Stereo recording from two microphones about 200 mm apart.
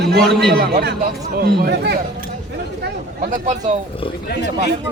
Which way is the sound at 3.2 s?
40° right (ahead or behind).